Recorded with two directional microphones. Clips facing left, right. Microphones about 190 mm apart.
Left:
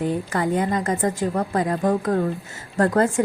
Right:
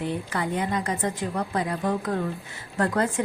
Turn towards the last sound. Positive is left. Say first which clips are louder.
# left 5 dB
turn(degrees=45)  # may be behind; listen again after turning